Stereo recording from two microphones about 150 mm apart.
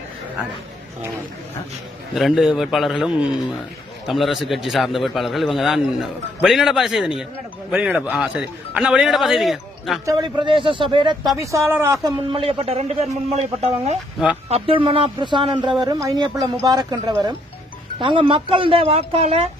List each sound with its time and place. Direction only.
2.1 s a man's voice: centre (ahead or behind)
10.1 s speech: 30° right (ahead or behind)
11.3 s speech: 20° right (ahead or behind)
12.1 s a man's voice: 35° right (ahead or behind)
14.5 s speech: 35° right (ahead or behind)